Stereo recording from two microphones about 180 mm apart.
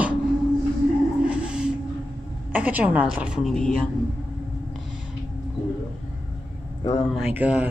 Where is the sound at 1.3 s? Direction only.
5° right (ahead or behind).